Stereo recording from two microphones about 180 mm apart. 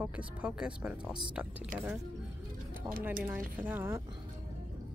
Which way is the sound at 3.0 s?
10° right (ahead or behind).